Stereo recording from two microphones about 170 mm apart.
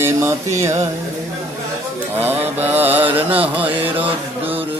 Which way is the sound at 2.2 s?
10° right (ahead or behind).